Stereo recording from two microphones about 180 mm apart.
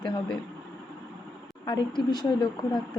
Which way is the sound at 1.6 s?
25° left (ahead or behind).